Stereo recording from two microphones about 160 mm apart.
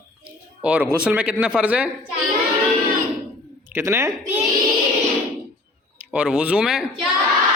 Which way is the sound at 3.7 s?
15° right (ahead or behind).